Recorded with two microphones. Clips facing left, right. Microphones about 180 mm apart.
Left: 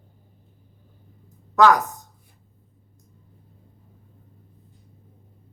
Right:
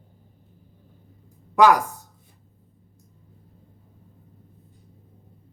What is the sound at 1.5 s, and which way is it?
Speech, 10° right (ahead or behind).